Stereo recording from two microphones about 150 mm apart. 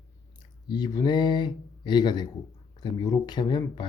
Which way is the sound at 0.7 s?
30° left (ahead or behind).